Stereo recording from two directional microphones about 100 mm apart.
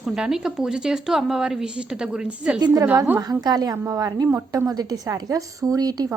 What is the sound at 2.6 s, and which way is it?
A woman's voice, 35° right (ahead or behind).